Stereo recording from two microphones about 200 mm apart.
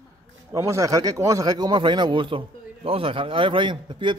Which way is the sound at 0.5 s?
15° right (ahead or behind).